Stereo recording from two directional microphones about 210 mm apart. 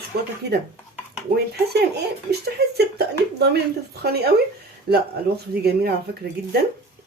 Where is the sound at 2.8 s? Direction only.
50° right (ahead or behind).